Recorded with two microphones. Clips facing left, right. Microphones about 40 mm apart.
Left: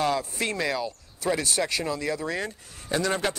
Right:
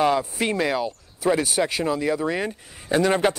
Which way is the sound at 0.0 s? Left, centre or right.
Centre.